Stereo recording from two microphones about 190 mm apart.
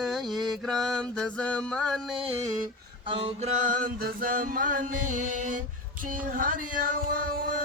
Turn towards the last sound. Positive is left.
turn(degrees=-50)  # may be behind; listen again after turning